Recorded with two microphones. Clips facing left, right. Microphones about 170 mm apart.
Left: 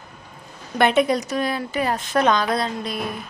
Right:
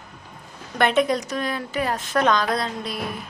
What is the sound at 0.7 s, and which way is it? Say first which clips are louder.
A woman's voice: left 2 dB; 5° left (ahead or behind).